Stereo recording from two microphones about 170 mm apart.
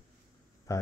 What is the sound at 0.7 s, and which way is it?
Speech, 15° left (ahead or behind).